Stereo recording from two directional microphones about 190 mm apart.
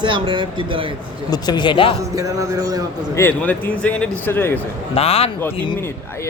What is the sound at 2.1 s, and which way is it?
Speech, 15° right (ahead or behind).